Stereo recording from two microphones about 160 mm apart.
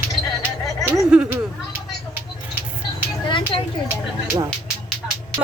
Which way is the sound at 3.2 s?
30° left (ahead or behind).